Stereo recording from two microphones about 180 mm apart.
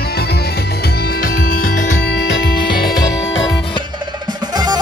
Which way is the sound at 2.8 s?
20° left (ahead or behind).